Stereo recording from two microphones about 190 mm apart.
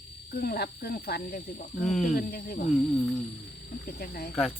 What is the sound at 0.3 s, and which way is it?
Speech, 55° left (ahead or behind).